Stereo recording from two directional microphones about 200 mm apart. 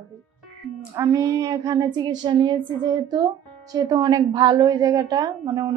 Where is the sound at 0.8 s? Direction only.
15° right (ahead or behind).